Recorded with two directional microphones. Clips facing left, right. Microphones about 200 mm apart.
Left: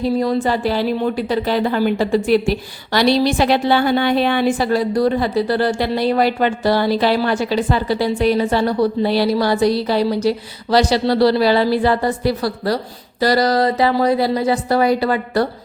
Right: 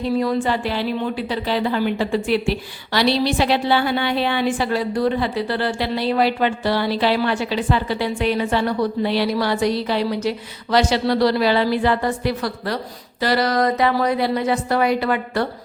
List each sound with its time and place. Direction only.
0.0 s a woman's voice: 35° left (ahead or behind)